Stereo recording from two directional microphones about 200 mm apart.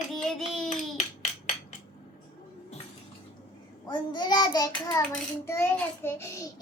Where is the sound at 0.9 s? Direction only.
35° left (ahead or behind).